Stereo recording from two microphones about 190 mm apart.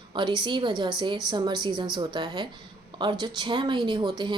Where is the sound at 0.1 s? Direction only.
25° right (ahead or behind).